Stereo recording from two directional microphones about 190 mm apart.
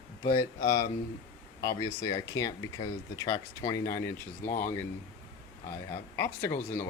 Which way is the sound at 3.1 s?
20° left (ahead or behind).